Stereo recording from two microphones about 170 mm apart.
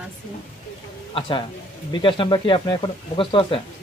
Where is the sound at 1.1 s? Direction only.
30° left (ahead or behind).